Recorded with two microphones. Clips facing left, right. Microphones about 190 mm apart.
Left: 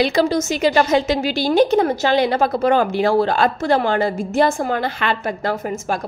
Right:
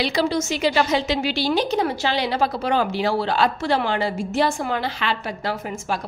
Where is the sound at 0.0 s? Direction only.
45° left (ahead or behind).